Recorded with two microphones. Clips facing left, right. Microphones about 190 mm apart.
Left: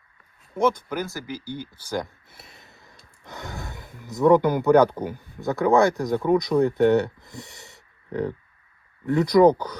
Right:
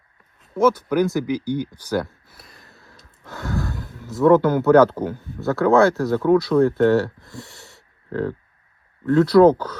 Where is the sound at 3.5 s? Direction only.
20° left (ahead or behind).